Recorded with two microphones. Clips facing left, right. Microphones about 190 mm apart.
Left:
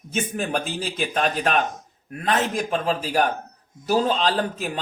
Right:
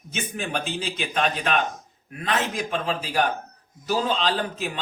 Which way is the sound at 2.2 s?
40° left (ahead or behind).